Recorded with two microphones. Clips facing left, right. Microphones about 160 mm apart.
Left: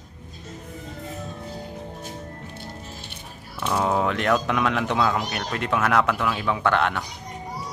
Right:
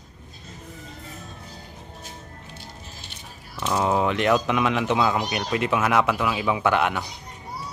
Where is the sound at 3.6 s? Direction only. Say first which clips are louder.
Right 1 dB; 5° right (ahead or behind).